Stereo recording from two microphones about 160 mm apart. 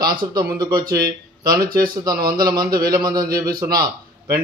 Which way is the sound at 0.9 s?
70° right (ahead or behind).